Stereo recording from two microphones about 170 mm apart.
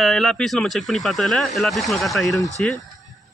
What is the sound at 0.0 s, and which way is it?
Speech, centre (ahead or behind).